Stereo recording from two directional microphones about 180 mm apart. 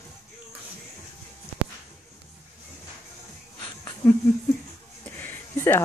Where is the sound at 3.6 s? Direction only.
20° left (ahead or behind).